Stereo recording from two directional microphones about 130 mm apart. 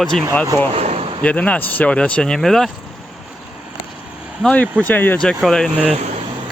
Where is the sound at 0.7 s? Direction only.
50° right (ahead or behind).